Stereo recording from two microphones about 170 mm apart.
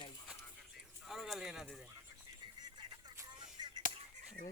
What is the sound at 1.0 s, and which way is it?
Speech, centre (ahead or behind).